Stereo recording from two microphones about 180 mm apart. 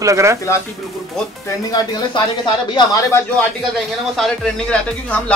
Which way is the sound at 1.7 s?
25° left (ahead or behind).